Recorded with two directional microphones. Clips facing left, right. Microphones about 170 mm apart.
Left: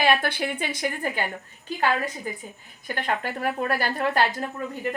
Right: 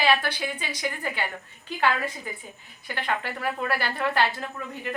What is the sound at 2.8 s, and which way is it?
Speech, 45° left (ahead or behind).